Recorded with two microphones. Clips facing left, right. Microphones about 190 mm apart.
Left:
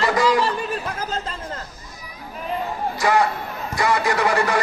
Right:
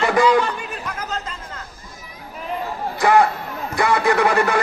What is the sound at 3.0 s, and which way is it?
Speech, 55° right (ahead or behind).